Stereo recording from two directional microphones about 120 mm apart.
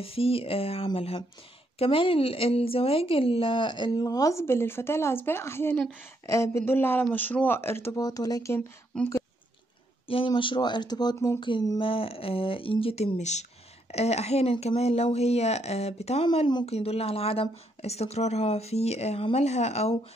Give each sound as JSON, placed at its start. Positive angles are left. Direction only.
{"t": 0.0, "sound": "a woman's voice", "side_deg": 50}
{"t": 8.5, "sound": "speech", "side_deg": 15}
{"t": 10.0, "sound": "a woman's voice", "side_deg": 45}